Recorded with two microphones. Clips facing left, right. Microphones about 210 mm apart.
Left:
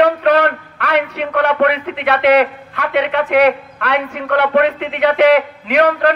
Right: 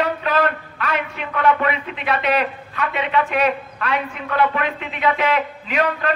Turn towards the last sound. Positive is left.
turn(degrees=70)  # may be behind; listen again after turning